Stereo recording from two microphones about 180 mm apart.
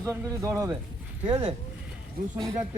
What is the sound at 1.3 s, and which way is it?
Speech, 25° right (ahead or behind).